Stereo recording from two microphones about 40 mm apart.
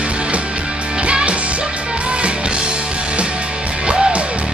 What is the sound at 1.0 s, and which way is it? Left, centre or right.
Music, right.